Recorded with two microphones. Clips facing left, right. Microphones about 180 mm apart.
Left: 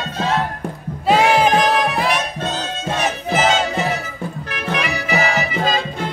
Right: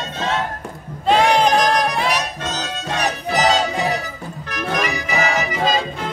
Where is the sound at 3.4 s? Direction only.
35° right (ahead or behind).